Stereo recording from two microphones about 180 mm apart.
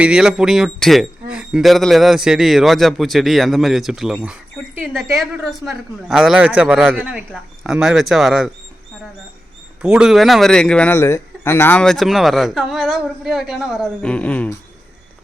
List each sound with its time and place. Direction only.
0.0 s speech: 5° right (ahead or behind)
9.8 s speech: 5° right (ahead or behind)